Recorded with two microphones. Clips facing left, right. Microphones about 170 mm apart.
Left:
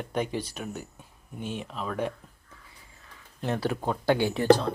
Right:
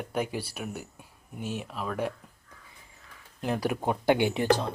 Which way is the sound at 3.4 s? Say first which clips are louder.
Even; 15° right (ahead or behind).